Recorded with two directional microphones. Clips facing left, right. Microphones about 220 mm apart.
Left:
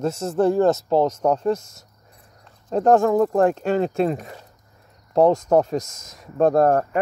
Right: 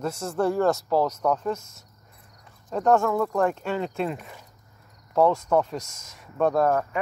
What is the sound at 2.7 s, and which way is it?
Speech, 35° left (ahead or behind).